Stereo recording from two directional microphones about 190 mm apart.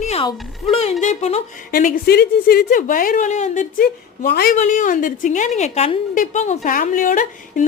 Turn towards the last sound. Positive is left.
turn(degrees=45)  # may be behind; listen again after turning